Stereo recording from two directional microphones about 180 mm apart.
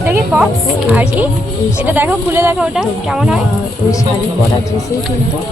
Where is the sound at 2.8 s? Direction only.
Centre (ahead or behind).